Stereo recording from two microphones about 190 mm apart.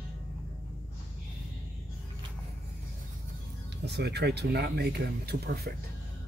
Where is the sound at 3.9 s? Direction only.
60° right (ahead or behind).